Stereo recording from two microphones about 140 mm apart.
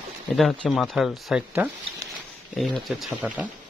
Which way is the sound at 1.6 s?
15° right (ahead or behind).